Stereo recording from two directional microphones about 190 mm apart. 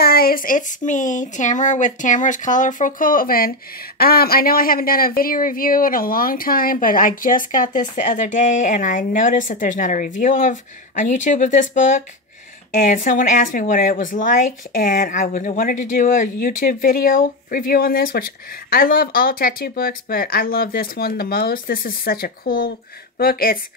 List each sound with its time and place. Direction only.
0.0 s speech: 50° left (ahead or behind)